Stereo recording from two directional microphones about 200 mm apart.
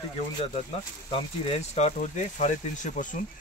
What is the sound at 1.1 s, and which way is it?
Speech, 30° left (ahead or behind).